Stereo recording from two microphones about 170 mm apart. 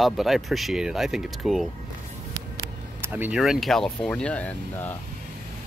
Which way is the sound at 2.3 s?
20° right (ahead or behind).